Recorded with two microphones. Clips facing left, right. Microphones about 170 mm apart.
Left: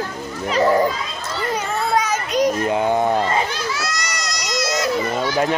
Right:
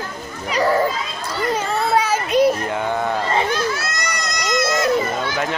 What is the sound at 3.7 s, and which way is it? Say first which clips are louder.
Baby cry: right 1 dB; 55° right (ahead or behind).